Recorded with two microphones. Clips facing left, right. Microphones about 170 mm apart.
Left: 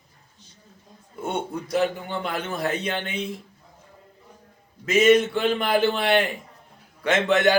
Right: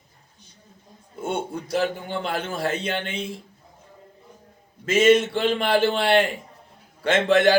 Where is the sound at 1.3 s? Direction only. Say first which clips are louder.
Left 2 dB; 30° right (ahead or behind).